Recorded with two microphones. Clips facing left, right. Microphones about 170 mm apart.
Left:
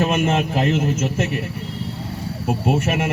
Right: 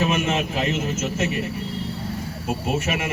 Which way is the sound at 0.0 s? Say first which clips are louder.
Left 3 dB; 55° left (ahead or behind).